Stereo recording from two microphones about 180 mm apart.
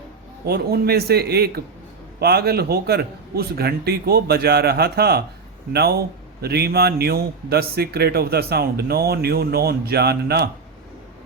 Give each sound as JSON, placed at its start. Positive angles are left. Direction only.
{"t": 0.4, "sound": "a man's voice", "side_deg": -60}